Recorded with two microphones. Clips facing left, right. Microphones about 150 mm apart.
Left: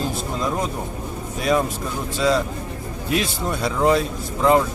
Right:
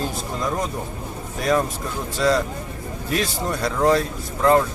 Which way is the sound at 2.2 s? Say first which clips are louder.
Even; centre (ahead or behind).